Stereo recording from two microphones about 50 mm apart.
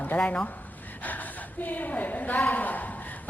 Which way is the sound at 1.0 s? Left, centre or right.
Left.